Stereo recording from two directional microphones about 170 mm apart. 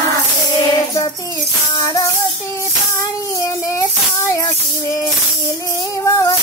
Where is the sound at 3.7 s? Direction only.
15° left (ahead or behind).